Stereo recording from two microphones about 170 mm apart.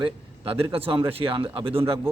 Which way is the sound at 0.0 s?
35° right (ahead or behind).